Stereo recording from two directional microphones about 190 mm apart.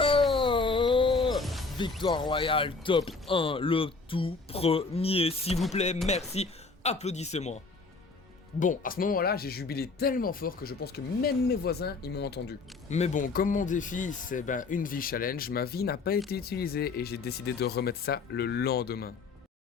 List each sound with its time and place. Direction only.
0.0 s a sound: 25° left (ahead or behind)
1.3 s music: centre (ahead or behind)
2.0 s speech: 25° left (ahead or behind); by 12.5 s 60° left (ahead or behind)
12.9 s speech: 40° left (ahead or behind)